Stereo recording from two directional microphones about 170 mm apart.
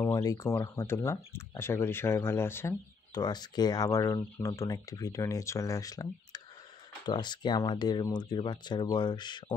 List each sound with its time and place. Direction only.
0.0 s speech: 20° left (ahead or behind)
3.2 s speech: 25° left (ahead or behind)